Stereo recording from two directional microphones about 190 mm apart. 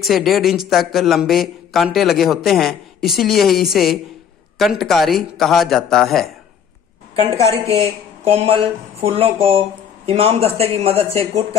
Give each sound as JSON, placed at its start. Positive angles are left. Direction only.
{"t": 0.0, "sound": "speech", "side_deg": 0}
{"t": 7.2, "sound": "a woman's voice", "side_deg": -35}